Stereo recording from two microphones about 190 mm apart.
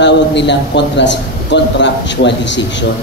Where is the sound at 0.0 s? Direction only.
70° left (ahead or behind).